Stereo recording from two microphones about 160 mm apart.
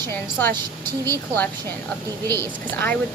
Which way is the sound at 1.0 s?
15° left (ahead or behind).